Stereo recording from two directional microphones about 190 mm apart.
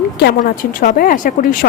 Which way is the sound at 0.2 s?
55° left (ahead or behind).